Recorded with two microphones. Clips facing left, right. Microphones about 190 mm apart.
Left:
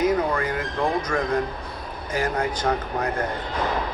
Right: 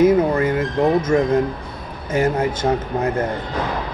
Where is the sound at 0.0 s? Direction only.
25° right (ahead or behind).